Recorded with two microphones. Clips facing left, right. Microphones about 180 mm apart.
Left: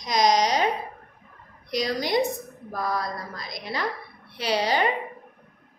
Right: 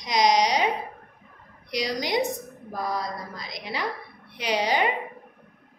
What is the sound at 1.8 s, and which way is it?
A woman's voice, 15° right (ahead or behind).